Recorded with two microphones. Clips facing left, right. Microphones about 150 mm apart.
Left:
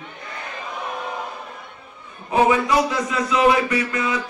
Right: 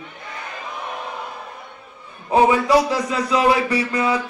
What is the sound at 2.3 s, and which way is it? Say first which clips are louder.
A man's voice: right 2 dB; 35° right (ahead or behind).